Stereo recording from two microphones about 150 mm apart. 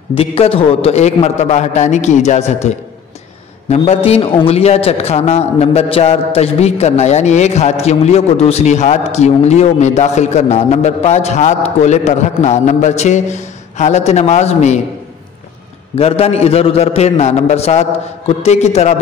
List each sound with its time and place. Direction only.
0.1 s a man's voice: 40° left (ahead or behind)
16.0 s a man's voice: 45° left (ahead or behind)